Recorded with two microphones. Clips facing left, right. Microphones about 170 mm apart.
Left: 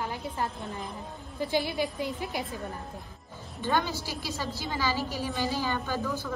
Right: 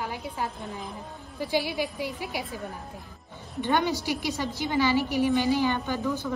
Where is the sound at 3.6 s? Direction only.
15° right (ahead or behind).